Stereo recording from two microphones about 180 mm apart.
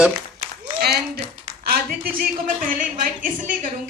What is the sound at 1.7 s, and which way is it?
A woman's voice, 55° right (ahead or behind).